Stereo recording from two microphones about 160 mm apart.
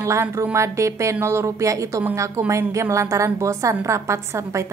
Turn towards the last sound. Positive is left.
turn(degrees=-20)  # may be behind; listen again after turning